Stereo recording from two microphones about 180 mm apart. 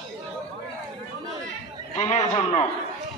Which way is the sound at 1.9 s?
35° left (ahead or behind).